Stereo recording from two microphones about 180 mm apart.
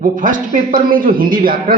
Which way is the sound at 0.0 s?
50° right (ahead or behind).